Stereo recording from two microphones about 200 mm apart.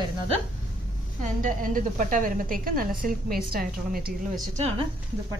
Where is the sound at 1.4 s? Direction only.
40° right (ahead or behind).